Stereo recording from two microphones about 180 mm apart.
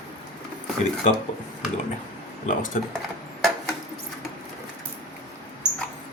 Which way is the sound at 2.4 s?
45° left (ahead or behind).